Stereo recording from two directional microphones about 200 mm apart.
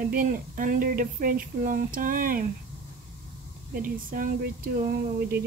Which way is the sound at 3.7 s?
45° right (ahead or behind).